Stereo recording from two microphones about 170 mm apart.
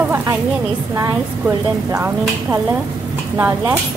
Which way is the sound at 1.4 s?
15° right (ahead or behind).